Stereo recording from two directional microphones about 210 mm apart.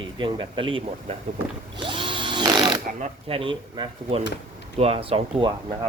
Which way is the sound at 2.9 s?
30° right (ahead or behind).